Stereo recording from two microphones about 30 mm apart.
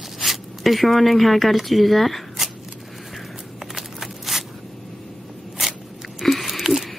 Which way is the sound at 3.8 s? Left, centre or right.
Centre.